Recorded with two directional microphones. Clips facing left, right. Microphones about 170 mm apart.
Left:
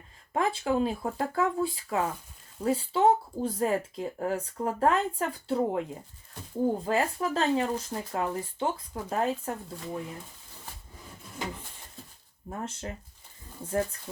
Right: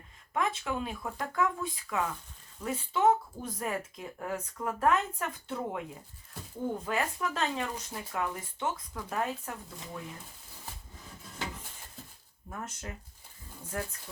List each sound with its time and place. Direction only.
0.3 s speech: 30° left (ahead or behind)
12.5 s speech: 30° left (ahead or behind)